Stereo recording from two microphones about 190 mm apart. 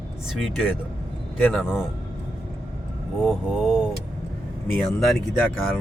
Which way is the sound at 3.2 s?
5° right (ahead or behind).